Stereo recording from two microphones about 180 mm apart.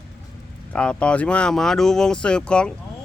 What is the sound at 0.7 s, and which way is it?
Speech, 5° left (ahead or behind).